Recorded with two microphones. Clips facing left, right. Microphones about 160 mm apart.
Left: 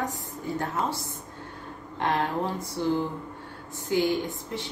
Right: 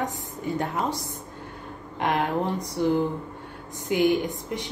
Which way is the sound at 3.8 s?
15° right (ahead or behind).